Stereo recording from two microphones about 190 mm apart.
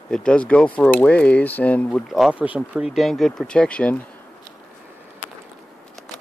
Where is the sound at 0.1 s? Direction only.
5° left (ahead or behind).